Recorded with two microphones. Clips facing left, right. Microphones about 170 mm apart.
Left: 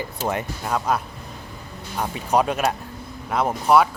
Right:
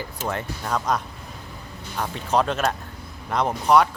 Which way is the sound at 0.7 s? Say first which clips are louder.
Left 1 dB; 10° left (ahead or behind).